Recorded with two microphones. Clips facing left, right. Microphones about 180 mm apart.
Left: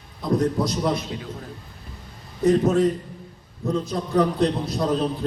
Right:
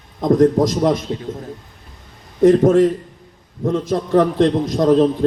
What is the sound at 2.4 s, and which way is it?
A man's voice, 90° right.